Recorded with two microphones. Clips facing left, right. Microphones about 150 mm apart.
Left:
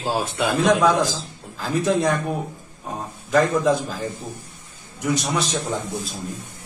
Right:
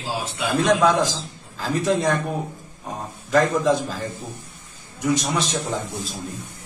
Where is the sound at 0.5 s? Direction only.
Centre (ahead or behind).